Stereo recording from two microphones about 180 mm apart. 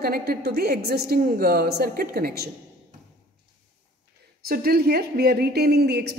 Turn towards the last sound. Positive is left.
turn(degrees=-65)  # may be behind; listen again after turning